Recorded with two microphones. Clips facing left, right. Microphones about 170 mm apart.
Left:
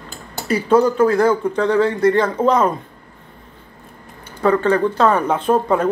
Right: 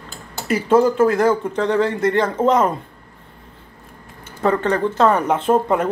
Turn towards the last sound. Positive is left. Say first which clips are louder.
# left 1 dB
turn(degrees=-20)  # may be behind; listen again after turning